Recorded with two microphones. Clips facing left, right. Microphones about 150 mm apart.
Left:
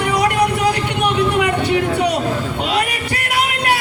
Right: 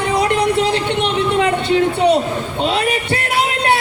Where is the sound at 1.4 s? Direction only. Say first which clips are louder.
Right 2 dB; 25° right (ahead or behind).